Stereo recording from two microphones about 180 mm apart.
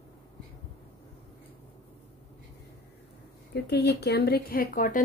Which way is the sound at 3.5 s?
65° left (ahead or behind).